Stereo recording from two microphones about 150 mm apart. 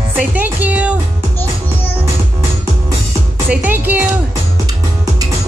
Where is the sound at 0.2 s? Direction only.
10° right (ahead or behind).